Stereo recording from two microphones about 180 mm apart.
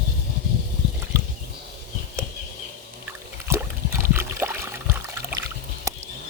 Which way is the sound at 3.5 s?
15° right (ahead or behind).